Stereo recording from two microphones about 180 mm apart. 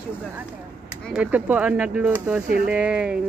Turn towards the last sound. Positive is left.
turn(degrees=-5)  # may be behind; listen again after turning